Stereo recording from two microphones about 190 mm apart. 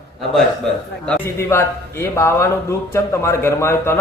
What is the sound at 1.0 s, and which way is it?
Speech, 10° left (ahead or behind).